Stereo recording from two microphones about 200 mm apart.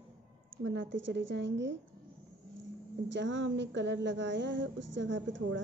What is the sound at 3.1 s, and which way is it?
A woman's voice, 65° right (ahead or behind).